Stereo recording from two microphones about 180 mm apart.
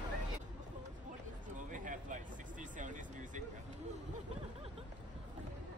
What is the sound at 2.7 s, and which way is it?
Vehicle, 45° right (ahead or behind).